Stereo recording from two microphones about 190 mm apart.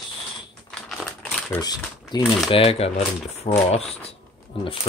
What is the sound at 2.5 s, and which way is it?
Speech, 30° left (ahead or behind).